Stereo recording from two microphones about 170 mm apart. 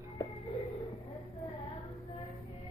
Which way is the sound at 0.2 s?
20° left (ahead or behind).